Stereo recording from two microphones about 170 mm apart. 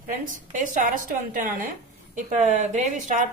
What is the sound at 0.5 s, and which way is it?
Speech, 50° right (ahead or behind).